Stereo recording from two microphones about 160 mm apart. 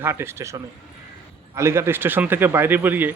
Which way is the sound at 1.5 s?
15° right (ahead or behind).